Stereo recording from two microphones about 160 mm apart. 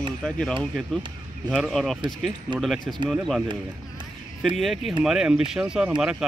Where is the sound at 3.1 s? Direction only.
Centre (ahead or behind).